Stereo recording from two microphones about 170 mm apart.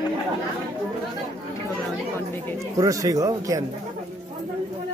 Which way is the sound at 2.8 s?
20° right (ahead or behind).